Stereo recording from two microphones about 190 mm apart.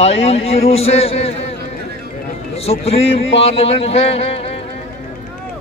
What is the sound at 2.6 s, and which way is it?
A man's voice, 30° left (ahead or behind).